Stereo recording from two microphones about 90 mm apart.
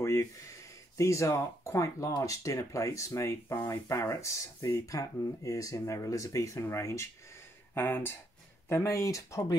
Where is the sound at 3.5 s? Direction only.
25° left (ahead or behind).